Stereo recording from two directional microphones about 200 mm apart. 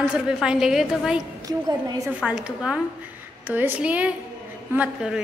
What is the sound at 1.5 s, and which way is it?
Speech, 15° right (ahead or behind).